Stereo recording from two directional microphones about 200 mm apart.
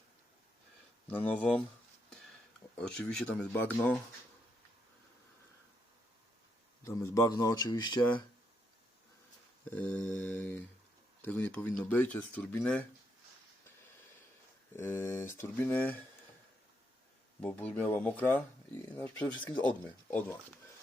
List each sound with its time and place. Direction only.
1.0 s speech: 5° left (ahead or behind)
2.7 s speech: 5° left (ahead or behind)
6.8 s speech: 15° left (ahead or behind)
9.6 s speech: 5° left (ahead or behind)
14.8 s speech: 10° left (ahead or behind)
17.4 s speech: 5° left (ahead or behind)